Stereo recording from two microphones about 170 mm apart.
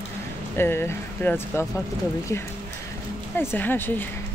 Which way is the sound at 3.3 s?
10° left (ahead or behind).